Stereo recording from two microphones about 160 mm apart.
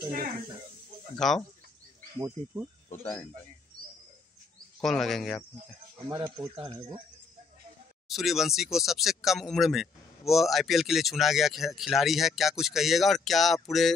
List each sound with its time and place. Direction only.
1.1 s speech: centre (ahead or behind)
2.1 s speech: 20° right (ahead or behind)
2.9 s speech: 10° left (ahead or behind)
4.8 s speech: centre (ahead or behind)
6.1 s speech: 30° right (ahead or behind)
8.1 s speech: centre (ahead or behind)